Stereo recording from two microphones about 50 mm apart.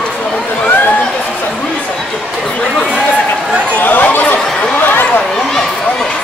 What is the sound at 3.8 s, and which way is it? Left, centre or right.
Speech, left.